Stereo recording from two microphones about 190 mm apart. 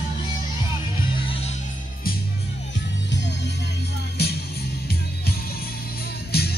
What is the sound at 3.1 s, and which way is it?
Music, 65° left (ahead or behind).